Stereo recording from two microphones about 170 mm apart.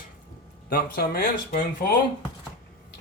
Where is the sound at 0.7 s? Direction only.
60° left (ahead or behind).